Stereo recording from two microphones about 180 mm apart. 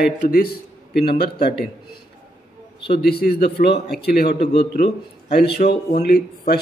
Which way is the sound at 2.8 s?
60° left (ahead or behind).